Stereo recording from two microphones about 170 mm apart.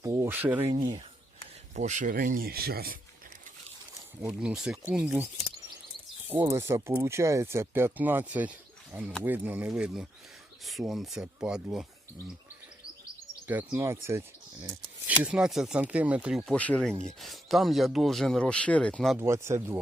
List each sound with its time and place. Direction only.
0.0 s speech: 20° right (ahead or behind)
0.5 s speech: 30° right (ahead or behind)
1.7 s speech: 45° right (ahead or behind); by 3.0 s 65° right (ahead or behind)
4.4 s speech: 5° right (ahead or behind)
6.2 s speech: 15° right (ahead or behind)
13.5 s speech: 10° right (ahead or behind)
15.2 s speech: 5° right (ahead or behind)
16.6 s speech: 5° left (ahead or behind)
19.2 s speech: 15° right (ahead or behind)